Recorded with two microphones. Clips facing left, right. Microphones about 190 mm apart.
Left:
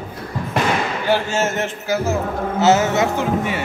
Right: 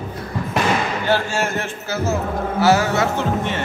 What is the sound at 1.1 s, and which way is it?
A man's voice, 15° left (ahead or behind).